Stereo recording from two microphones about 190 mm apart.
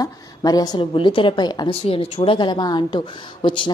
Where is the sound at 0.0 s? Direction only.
20° left (ahead or behind).